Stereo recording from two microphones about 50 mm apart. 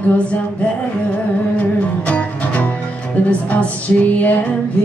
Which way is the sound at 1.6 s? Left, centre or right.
Left.